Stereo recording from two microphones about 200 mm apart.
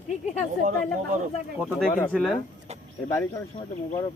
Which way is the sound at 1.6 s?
5° right (ahead or behind).